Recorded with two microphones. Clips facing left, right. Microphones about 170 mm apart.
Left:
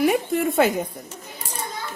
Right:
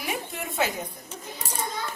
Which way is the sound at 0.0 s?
55° left (ahead or behind).